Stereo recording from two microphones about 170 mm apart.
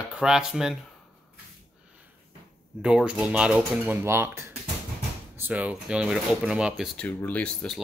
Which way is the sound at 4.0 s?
15° right (ahead or behind).